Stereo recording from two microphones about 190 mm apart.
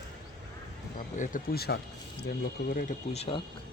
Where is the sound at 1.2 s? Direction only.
50° left (ahead or behind).